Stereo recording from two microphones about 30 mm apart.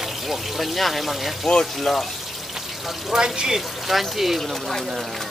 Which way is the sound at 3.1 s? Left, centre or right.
Right.